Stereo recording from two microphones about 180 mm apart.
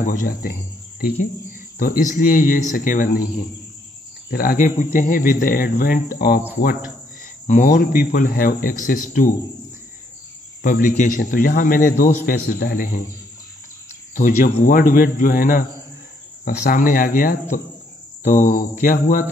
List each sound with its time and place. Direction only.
0.0 s a man's voice: 50° left (ahead or behind)
1.8 s a man's voice: 50° left (ahead or behind)
7.4 s a man's voice: 50° left (ahead or behind)
10.6 s a man's voice: 50° left (ahead or behind)
14.1 s a man's voice: 50° left (ahead or behind)